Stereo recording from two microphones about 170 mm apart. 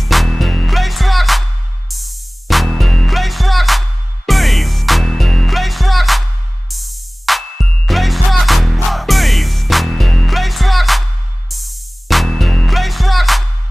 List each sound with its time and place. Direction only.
0.0 s music: centre (ahead or behind)